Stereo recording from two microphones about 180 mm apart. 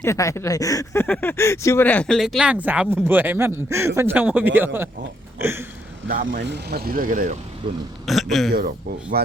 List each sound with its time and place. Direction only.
0.0 s speech: 15° left (ahead or behind); by 4.9 s 10° right (ahead or behind)
5.4 s a sound: 15° right (ahead or behind)
6.3 s speech: 65° right (ahead or behind); by 7.3 s 50° right (ahead or behind)
8.0 s a man's voice: centre (ahead or behind)
8.5 s speech: 60° right (ahead or behind)